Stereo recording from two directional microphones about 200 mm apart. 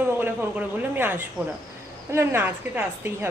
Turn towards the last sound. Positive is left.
turn(degrees=-10)  # may be behind; listen again after turning